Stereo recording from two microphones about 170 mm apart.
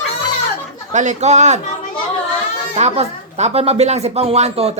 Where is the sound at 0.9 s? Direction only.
45° right (ahead or behind).